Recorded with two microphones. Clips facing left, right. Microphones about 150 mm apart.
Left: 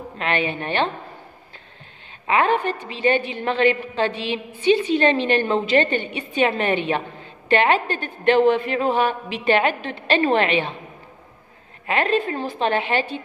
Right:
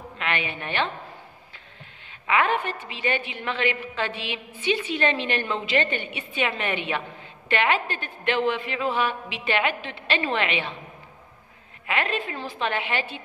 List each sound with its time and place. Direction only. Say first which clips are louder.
0.2 s a woman's voice: left 6 dB; 35° left (ahead or behind)
2.2 s a woman's voice: left 4 dB; 35° left (ahead or behind)
11.8 s a woman's voice: left 7 dB; 35° left (ahead or behind)